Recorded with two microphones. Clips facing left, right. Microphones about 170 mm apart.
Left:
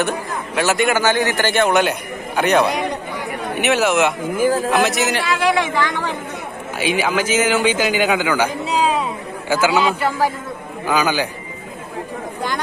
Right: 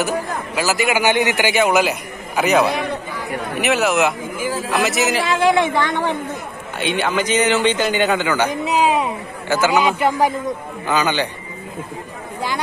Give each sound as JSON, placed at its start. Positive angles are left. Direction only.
{"t": 0.6, "sound": "a man's voice", "side_deg": -5}
{"t": 1.0, "sound": "a man's voice", "side_deg": -15}
{"t": 5.2, "sound": "speech", "side_deg": -25}
{"t": 6.8, "sound": "a man's voice", "side_deg": 5}
{"t": 8.5, "sound": "a sound", "side_deg": -20}
{"t": 9.7, "sound": "speech", "side_deg": -15}
{"t": 10.9, "sound": "a man's voice", "side_deg": 10}